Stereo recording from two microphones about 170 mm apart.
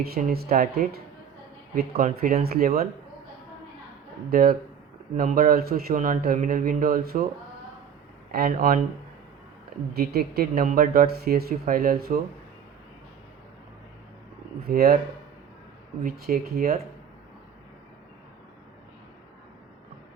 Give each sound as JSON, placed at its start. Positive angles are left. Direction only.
{"t": 0.0, "sound": "speech", "side_deg": -60}
{"t": 2.0, "sound": "speech", "side_deg": -55}
{"t": 4.3, "sound": "speech", "side_deg": -60}
{"t": 8.3, "sound": "speech", "side_deg": -60}
{"t": 9.9, "sound": "speech", "side_deg": -65}
{"t": 14.7, "sound": "speech", "side_deg": -60}
{"t": 16.0, "sound": "speech", "side_deg": -60}